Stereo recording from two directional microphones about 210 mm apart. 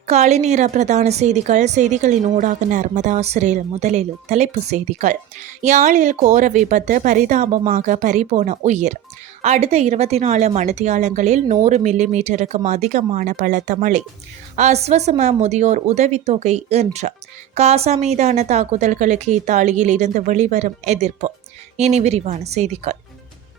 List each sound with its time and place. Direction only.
0.1 s a woman's voice: 30° right (ahead or behind)